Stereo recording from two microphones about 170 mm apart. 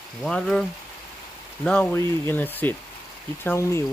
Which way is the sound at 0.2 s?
5° left (ahead or behind).